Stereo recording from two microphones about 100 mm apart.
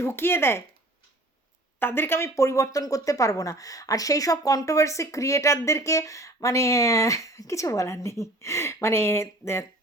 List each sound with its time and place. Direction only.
0.0 s speech: 25° left (ahead or behind)
1.8 s speech: 20° left (ahead or behind)